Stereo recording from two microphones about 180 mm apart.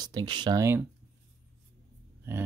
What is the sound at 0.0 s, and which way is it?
Speech, 25° right (ahead or behind).